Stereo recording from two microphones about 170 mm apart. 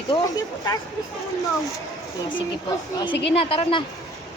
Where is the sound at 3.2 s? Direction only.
35° left (ahead or behind).